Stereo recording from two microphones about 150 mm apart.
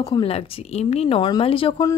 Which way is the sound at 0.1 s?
40° left (ahead or behind).